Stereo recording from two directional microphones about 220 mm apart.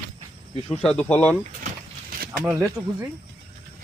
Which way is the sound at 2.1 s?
40° right (ahead or behind).